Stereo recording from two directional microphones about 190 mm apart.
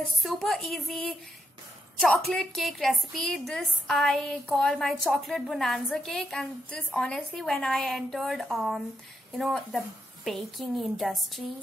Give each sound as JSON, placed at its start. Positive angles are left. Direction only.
{"t": 0.0, "sound": "a woman's voice", "side_deg": 0}